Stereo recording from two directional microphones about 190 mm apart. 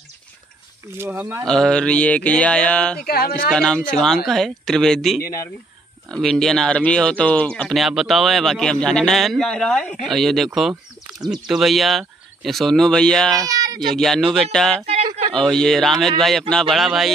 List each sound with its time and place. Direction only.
0.9 s speech: 10° right (ahead or behind)
1.4 s speech: 5° left (ahead or behind)
3.1 s speech: 55° left (ahead or behind)
3.4 s speech: 5° left (ahead or behind)
13.4 s speech: 20° right (ahead or behind)
13.8 s speech: centre (ahead or behind)